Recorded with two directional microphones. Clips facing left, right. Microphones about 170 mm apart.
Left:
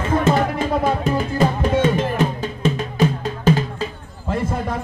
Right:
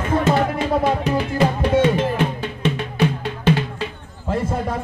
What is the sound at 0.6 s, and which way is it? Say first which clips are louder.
Music: even; 45° left (ahead or behind).